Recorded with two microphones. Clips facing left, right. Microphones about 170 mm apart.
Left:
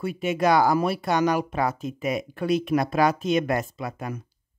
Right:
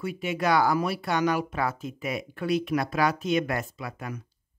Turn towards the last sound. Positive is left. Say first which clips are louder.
# left 4 dB
turn(degrees=25)  # may be behind; listen again after turning